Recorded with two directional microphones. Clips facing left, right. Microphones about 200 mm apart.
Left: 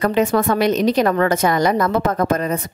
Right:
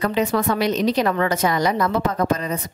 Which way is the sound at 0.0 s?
50° left (ahead or behind).